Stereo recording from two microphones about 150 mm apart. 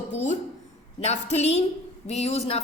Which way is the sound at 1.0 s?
50° left (ahead or behind).